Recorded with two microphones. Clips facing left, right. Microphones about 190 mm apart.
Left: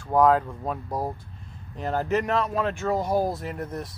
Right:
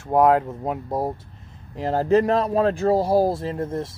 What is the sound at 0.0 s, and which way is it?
Speech, 25° right (ahead or behind).